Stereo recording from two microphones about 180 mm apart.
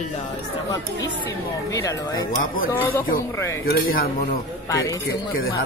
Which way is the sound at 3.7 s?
55° left (ahead or behind).